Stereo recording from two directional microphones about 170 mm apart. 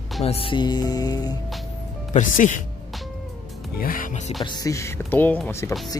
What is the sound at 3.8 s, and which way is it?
Speech, 55° left (ahead or behind).